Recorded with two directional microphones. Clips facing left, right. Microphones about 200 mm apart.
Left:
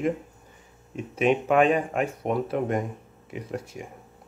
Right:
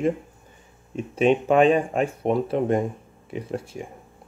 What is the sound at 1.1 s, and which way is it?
Speech, 30° right (ahead or behind).